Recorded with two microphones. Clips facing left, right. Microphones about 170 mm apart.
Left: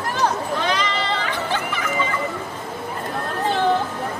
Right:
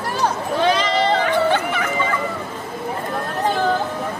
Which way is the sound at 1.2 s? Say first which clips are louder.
Right 7 dB; 60° right (ahead or behind).